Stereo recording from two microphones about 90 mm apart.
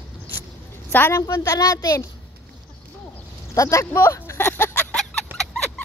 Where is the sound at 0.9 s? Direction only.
25° left (ahead or behind).